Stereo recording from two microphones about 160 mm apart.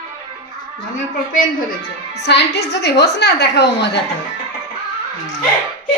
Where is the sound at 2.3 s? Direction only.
90° left.